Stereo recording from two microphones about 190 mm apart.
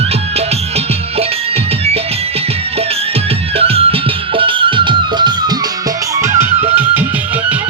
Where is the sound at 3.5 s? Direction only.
30° right (ahead or behind); by 6.4 s 15° right (ahead or behind).